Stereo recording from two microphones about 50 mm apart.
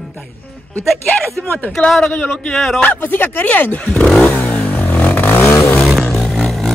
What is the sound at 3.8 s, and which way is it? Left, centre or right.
Speech, left.